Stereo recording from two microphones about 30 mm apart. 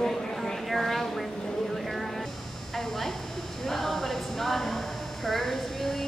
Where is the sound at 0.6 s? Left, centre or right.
Centre.